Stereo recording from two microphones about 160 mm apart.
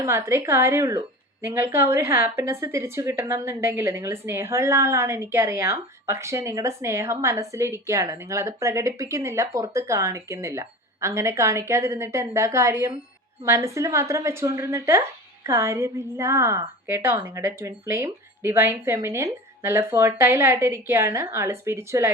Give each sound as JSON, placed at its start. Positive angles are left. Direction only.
{"t": 0.0, "sound": "speech", "side_deg": -15}